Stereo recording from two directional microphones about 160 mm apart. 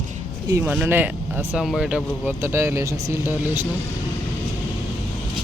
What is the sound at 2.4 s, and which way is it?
Speech, 15° right (ahead or behind).